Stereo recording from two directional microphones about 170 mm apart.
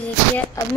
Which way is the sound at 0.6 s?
20° left (ahead or behind).